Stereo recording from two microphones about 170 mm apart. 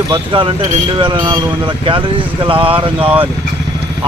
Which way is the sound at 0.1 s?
30° right (ahead or behind).